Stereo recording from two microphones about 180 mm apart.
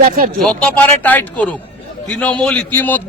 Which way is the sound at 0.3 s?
5° left (ahead or behind).